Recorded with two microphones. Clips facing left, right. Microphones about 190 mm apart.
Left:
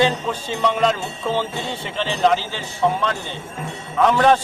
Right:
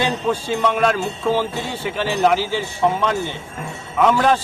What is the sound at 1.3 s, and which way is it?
Speech, 10° right (ahead or behind).